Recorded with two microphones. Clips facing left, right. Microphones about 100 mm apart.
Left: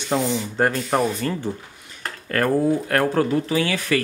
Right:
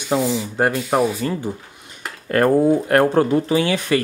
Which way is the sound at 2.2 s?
25° right (ahead or behind).